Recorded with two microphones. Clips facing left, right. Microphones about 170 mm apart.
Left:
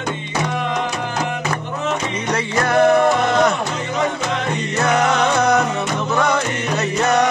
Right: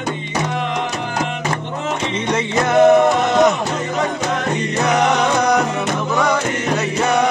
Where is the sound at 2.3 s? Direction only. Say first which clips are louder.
Right 2 dB; 20° right (ahead or behind).